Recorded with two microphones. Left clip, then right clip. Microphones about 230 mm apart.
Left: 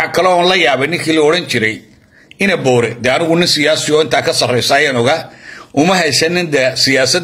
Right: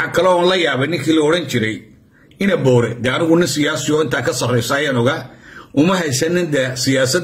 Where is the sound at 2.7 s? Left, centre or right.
Centre.